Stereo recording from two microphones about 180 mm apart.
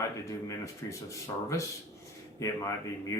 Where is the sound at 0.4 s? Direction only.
15° left (ahead or behind).